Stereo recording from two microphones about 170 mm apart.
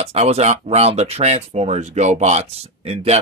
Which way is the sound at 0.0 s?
40° right (ahead or behind).